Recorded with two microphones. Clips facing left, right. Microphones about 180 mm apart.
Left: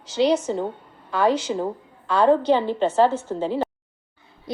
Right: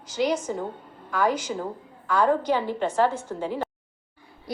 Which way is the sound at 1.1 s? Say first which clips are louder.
Left 4 dB; 30° left (ahead or behind).